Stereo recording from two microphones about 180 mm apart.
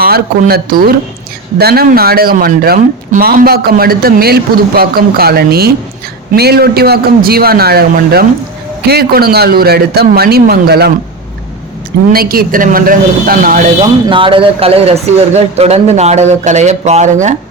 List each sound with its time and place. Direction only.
0.0 s speech: 60° right (ahead or behind)
12.1 s a man's voice: 55° right (ahead or behind)
14.1 s speech: 30° right (ahead or behind)